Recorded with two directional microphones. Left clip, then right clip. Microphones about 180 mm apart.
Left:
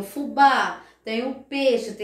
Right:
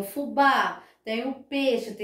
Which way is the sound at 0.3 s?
25° right (ahead or behind).